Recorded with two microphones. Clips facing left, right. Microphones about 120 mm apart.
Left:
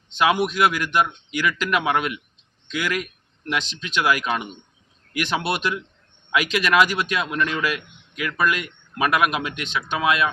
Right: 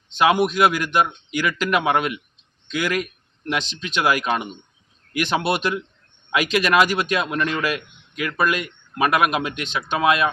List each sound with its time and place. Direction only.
0.2 s speech: 25° right (ahead or behind)